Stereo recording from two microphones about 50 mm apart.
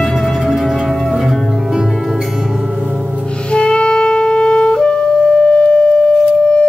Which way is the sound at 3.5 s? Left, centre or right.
Left.